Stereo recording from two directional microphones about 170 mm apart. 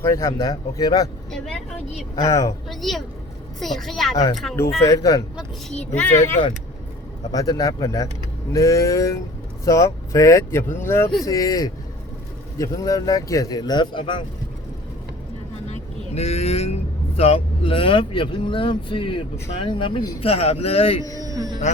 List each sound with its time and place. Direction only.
0.0 s speech: 15° left (ahead or behind)
1.3 s speech: 5° left (ahead or behind)
2.2 s speech: 20° left (ahead or behind)
2.6 s speech: centre (ahead or behind)
4.9 s speech: 20° left (ahead or behind)
5.7 s speech: 5° left (ahead or behind)
7.3 s speech: 20° left (ahead or behind)
16.1 s speech: 40° left (ahead or behind)
21.2 s music: 20° right (ahead or behind)